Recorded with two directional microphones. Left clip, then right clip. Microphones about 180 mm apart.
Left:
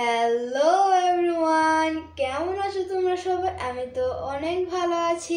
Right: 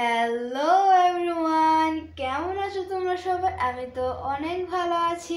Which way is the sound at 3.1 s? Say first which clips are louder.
Even; 5° left (ahead or behind).